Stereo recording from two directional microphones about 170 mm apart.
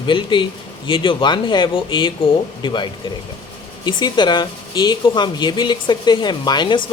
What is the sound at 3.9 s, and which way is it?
Speech, 25° left (ahead or behind).